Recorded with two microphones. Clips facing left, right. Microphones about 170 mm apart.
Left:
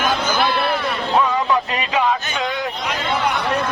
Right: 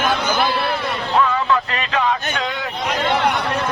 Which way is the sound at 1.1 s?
15° left (ahead or behind).